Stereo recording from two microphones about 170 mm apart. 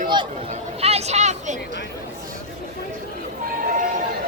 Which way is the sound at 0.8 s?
40° right (ahead or behind).